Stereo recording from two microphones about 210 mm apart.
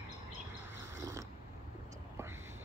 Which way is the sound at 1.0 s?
15° right (ahead or behind).